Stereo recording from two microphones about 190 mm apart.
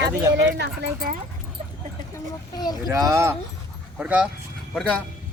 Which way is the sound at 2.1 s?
20° left (ahead or behind).